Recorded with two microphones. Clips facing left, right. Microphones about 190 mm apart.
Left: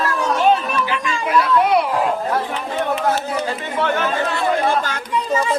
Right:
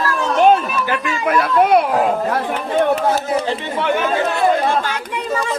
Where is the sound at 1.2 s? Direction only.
50° right (ahead or behind).